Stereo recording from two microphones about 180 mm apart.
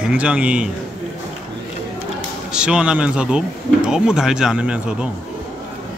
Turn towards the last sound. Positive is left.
turn(degrees=-5)  # may be behind; listen again after turning